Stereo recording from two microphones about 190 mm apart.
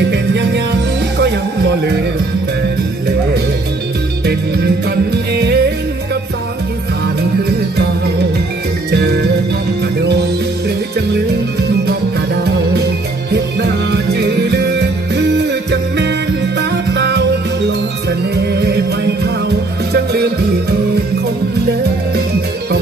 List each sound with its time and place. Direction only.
0.1 s music: 65° right (ahead or behind)
5.1 s music: 60° right (ahead or behind)
8.9 s music: 60° right (ahead or behind)
13.3 s music: 60° right (ahead or behind)
16.5 s music: 65° right (ahead or behind)